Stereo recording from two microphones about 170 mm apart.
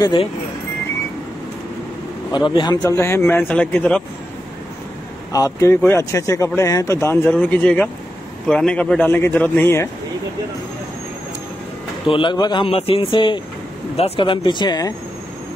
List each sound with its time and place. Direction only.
0.0 s speech: 30° left (ahead or behind)
2.3 s speech: 25° left (ahead or behind); by 4.0 s 5° left (ahead or behind)
5.3 s speech: 20° left (ahead or behind)
12.1 s speech: 30° left (ahead or behind)